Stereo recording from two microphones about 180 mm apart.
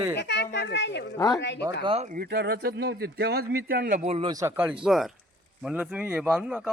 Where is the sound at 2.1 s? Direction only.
60° right (ahead or behind).